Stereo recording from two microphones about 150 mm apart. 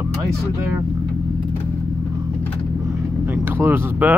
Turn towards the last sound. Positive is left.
turn(degrees=-10)  # may be behind; listen again after turning